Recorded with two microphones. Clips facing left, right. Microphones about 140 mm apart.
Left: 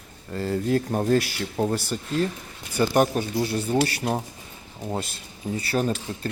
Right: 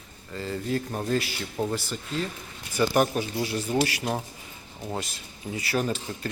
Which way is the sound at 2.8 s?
35° left (ahead or behind).